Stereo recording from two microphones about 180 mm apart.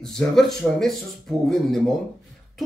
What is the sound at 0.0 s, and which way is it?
Speech, centre (ahead or behind).